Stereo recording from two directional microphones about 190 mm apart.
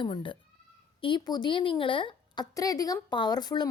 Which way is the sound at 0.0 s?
25° left (ahead or behind).